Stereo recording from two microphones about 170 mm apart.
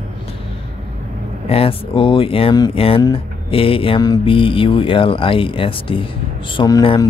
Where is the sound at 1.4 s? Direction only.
35° left (ahead or behind).